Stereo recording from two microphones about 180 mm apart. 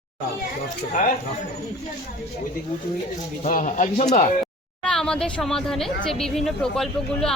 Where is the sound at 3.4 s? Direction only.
45° left (ahead or behind).